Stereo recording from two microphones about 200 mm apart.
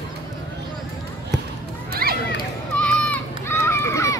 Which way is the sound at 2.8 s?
10° left (ahead or behind).